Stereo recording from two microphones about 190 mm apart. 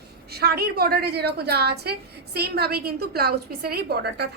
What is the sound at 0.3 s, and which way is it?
A woman's voice, 55° right (ahead or behind).